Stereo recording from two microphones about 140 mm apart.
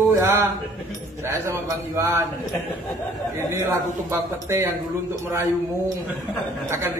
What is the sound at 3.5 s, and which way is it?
A man's voice, 20° right (ahead or behind).